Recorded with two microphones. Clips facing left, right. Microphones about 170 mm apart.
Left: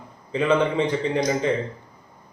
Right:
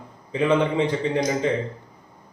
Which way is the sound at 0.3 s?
20° right (ahead or behind).